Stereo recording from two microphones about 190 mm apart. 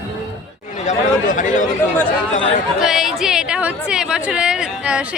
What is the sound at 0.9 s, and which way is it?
Speech, 40° left (ahead or behind).